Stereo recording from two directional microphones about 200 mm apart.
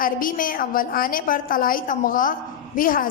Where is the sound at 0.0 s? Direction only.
45° left (ahead or behind).